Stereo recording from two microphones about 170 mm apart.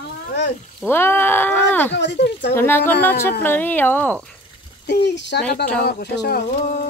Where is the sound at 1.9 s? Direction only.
90° left.